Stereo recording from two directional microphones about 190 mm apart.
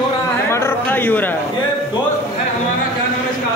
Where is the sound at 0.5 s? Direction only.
10° left (ahead or behind).